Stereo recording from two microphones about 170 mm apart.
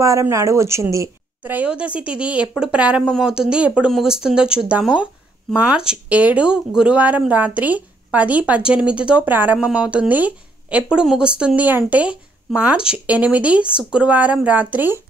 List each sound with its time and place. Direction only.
0.0 s speech: 20° right (ahead or behind)